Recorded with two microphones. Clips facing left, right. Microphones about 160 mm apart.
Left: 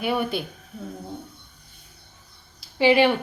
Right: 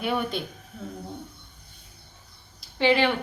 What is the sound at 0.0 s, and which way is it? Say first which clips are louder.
Speech: left 3 dB; 5° left (ahead or behind).